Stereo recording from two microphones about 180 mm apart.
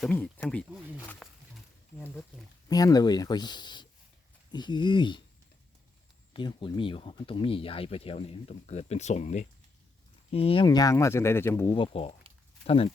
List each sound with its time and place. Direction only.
0.0 s speech: 5° left (ahead or behind)
1.2 s wild animals: 15° left (ahead or behind)
2.6 s speech: 20° left (ahead or behind)
6.3 s speech: 25° left (ahead or behind)
11.7 s speech: 30° left (ahead or behind)